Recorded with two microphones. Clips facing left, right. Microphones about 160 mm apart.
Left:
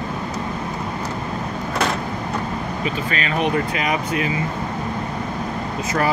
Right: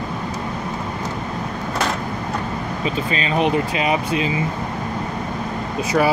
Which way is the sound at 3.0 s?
25° right (ahead or behind).